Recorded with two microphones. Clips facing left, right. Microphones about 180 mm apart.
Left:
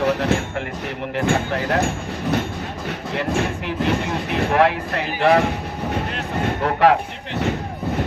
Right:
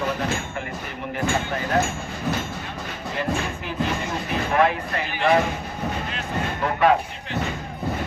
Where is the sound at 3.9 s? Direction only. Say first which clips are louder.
Left 5 dB; 70° left (ahead or behind).